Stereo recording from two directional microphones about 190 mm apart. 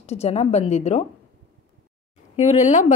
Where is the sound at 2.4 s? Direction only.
35° left (ahead or behind).